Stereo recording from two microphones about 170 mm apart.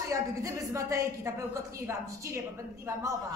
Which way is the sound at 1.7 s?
15° right (ahead or behind).